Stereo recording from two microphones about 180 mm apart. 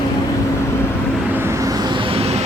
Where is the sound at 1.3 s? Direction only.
15° right (ahead or behind); by 2.4 s 35° right (ahead or behind).